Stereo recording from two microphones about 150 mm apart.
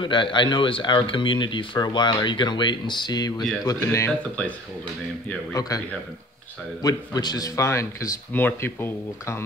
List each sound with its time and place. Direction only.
0.0 s a man's voice: 30° left (ahead or behind)
4.2 s speech: 10° left (ahead or behind)
5.5 s a man's voice: 25° left (ahead or behind)
6.8 s a man's voice: 25° left (ahead or behind)